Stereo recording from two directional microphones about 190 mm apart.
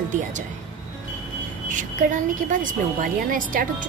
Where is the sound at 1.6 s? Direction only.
45° right (ahead or behind).